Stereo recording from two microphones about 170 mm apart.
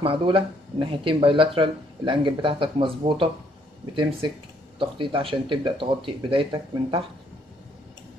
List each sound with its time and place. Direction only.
0.0 s speech: 30° right (ahead or behind)